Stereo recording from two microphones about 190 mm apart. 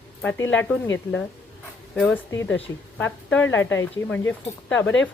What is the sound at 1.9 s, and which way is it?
Speech, 5° left (ahead or behind).